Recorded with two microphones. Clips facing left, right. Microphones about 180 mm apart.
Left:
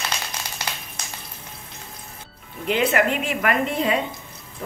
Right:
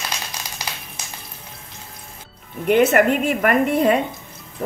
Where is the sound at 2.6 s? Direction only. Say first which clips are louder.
Right 6 dB; 50° right (ahead or behind).